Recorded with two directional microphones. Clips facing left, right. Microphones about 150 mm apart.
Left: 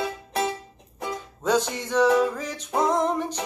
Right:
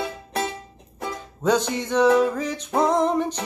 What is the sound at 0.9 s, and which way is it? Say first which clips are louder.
Music: even; 10° left (ahead or behind).